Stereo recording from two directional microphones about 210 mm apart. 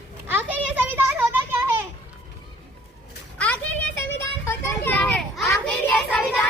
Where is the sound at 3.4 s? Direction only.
5° left (ahead or behind).